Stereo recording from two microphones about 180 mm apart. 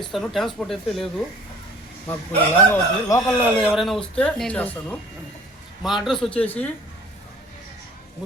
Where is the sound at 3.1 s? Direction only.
15° left (ahead or behind).